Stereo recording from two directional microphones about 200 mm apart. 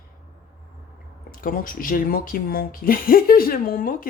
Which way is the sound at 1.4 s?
45° left (ahead or behind).